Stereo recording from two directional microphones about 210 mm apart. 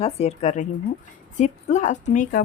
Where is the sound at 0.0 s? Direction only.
30° left (ahead or behind).